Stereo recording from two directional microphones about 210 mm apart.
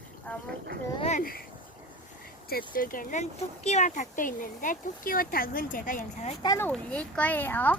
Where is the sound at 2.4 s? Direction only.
45° left (ahead or behind).